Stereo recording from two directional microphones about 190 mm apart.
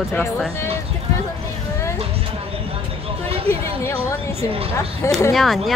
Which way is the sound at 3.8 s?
15° left (ahead or behind).